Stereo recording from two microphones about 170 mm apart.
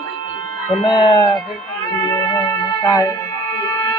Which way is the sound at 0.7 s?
30° left (ahead or behind).